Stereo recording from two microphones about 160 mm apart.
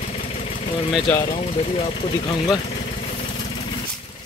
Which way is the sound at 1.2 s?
35° left (ahead or behind).